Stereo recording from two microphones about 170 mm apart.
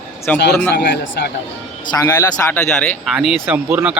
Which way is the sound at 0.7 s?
60° left (ahead or behind).